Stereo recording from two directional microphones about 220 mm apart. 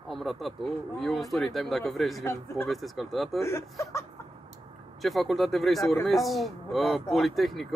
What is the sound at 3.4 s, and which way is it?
Speech, 15° left (ahead or behind).